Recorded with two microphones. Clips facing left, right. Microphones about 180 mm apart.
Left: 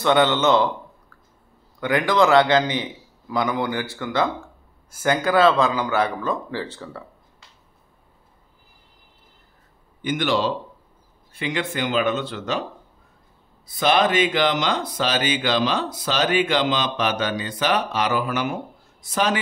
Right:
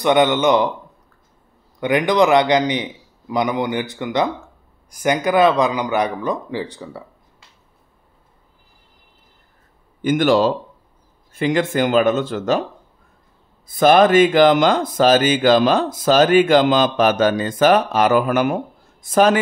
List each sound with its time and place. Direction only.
0.0 s speech: 15° right (ahead or behind)
1.8 s a man's voice: 20° right (ahead or behind)
10.0 s speech: 45° right (ahead or behind)
13.7 s speech: 50° right (ahead or behind)